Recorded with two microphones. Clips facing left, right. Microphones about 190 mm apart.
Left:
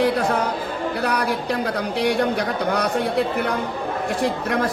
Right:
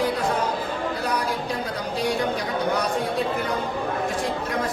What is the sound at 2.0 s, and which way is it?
Speech, 70° left (ahead or behind).